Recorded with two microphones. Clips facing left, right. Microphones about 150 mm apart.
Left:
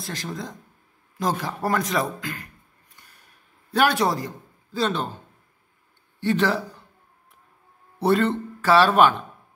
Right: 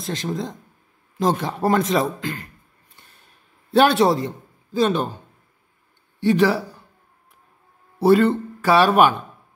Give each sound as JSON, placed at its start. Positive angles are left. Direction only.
{"t": 0.0, "sound": "a man's voice", "side_deg": -20}
{"t": 3.0, "sound": "a sound", "side_deg": -25}
{"t": 3.7, "sound": "a man's voice", "side_deg": -25}
{"t": 6.1, "sound": "a man's voice", "side_deg": -15}
{"t": 8.0, "sound": "a sound", "side_deg": -5}
{"t": 8.6, "sound": "speech", "side_deg": -15}